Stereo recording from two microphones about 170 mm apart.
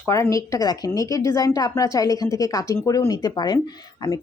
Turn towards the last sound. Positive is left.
turn(degrees=20)  # may be behind; listen again after turning